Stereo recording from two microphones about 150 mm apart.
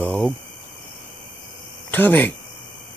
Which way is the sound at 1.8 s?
10° left (ahead or behind).